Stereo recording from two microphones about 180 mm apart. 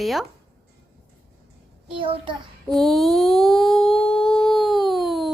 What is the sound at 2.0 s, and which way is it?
Speech, 30° right (ahead or behind).